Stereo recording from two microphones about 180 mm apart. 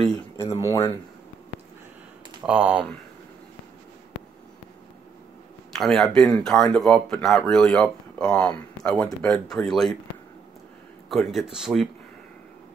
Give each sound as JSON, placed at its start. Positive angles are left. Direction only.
{"t": 0.1, "sound": "speech", "side_deg": 20}
{"t": 2.4, "sound": "speech", "side_deg": -5}
{"t": 5.8, "sound": "speech", "side_deg": 0}
{"t": 11.1, "sound": "speech", "side_deg": 0}